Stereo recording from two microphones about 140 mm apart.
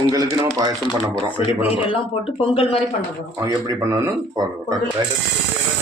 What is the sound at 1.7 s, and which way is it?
Speech, 45° left (ahead or behind).